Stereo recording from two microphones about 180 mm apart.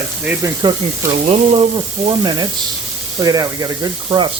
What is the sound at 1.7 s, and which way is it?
Sizzle, 25° right (ahead or behind).